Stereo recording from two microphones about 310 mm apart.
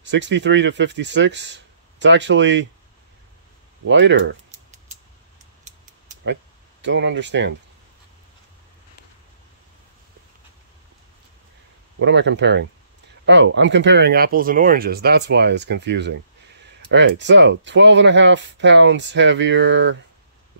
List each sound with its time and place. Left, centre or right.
0.0 s speech: right
3.8 s speech: right
4.5 s a sound: right
6.8 s speech: right
12.0 s speech: right